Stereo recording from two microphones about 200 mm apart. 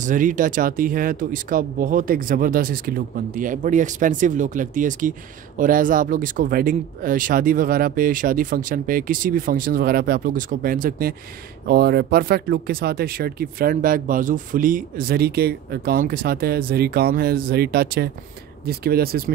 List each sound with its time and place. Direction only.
0.0 s speech: 40° right (ahead or behind)